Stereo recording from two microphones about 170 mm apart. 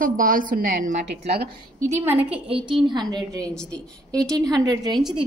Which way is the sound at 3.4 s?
5° left (ahead or behind).